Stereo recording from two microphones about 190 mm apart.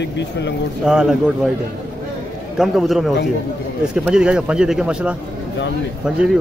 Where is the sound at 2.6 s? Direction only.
Centre (ahead or behind).